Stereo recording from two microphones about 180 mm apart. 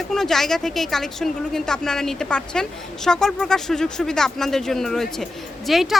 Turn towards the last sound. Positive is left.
turn(degrees=0)  # may be behind; listen again after turning